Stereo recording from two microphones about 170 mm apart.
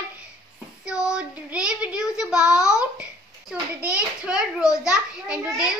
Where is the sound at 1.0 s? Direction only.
5° right (ahead or behind).